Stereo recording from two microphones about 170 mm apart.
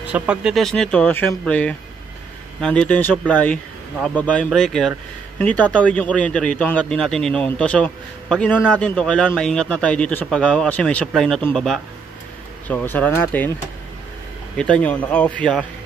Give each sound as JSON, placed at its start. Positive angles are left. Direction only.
{"t": 0.1, "sound": "a man's voice", "side_deg": -5}
{"t": 14.6, "sound": "a man's voice", "side_deg": 5}